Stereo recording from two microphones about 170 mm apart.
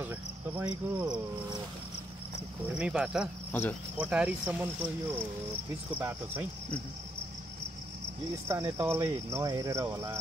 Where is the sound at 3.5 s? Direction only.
10° left (ahead or behind).